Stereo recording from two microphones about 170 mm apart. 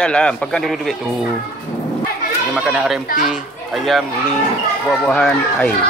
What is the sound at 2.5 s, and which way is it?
A man's voice, 5° right (ahead or behind).